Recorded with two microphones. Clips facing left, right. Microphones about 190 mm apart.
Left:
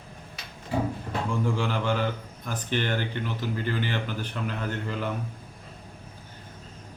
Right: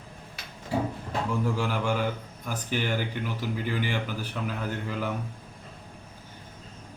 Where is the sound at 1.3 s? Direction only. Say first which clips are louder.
Left 1 dB; 5° right (ahead or behind).